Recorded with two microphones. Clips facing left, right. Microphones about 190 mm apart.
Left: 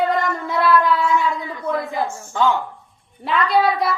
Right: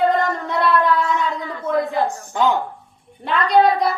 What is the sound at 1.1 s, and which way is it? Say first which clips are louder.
Speech: left 2 dB; 40° right (ahead or behind).